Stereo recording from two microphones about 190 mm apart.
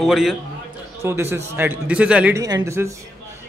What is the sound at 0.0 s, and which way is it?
Speech, centre (ahead or behind).